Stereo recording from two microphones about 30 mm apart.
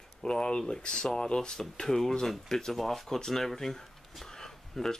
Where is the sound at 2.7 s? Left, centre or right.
Centre.